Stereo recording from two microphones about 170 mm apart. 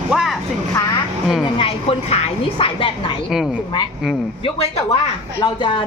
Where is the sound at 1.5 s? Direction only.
35° left (ahead or behind).